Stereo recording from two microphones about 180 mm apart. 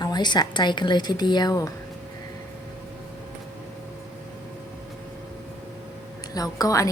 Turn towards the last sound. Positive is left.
turn(degrees=20)  # may be behind; listen again after turning